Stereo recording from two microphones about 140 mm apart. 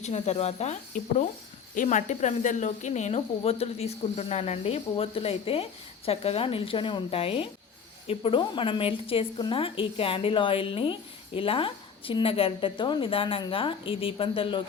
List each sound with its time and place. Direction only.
0.0 s speech: 50° left (ahead or behind)
1.7 s a woman's voice: 65° left (ahead or behind); by 14.6 s 40° left (ahead or behind)